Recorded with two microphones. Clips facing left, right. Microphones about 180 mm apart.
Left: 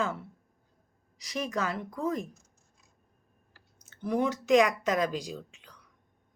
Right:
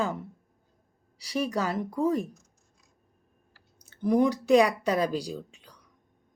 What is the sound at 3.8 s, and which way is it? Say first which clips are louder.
Speech: right 6 dB; 40° right (ahead or behind).